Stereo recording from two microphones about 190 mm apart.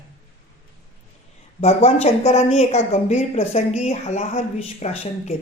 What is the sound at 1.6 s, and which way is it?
Speech, 35° left (ahead or behind).